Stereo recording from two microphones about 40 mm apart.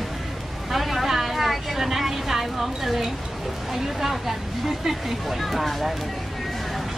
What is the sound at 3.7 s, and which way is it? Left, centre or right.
Speech, centre.